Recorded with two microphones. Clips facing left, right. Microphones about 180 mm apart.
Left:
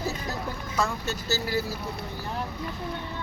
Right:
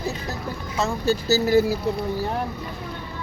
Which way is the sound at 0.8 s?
25° right (ahead or behind).